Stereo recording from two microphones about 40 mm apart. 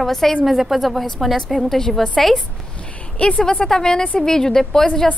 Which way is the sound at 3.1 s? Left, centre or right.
Left.